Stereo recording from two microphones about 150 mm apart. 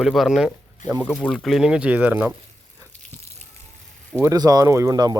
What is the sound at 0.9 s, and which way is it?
Speech, 15° right (ahead or behind).